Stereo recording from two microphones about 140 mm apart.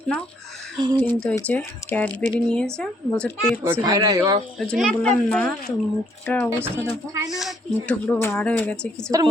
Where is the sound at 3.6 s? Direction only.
20° right (ahead or behind).